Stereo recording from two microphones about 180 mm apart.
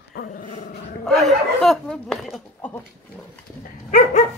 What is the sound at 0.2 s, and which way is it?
Dog, 65° left (ahead or behind).